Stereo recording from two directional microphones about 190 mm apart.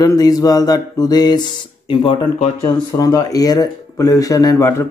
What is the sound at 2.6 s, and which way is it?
Speech, 15° left (ahead or behind).